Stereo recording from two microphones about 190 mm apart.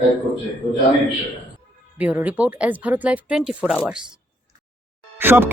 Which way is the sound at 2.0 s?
10° right (ahead or behind).